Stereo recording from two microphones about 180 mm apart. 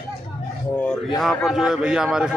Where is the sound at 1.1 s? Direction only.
Centre (ahead or behind).